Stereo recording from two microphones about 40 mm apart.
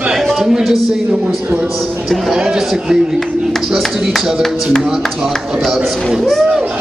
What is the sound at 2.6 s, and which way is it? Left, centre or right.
Speech, centre.